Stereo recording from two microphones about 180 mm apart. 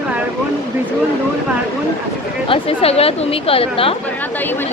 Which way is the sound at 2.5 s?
30° left (ahead or behind).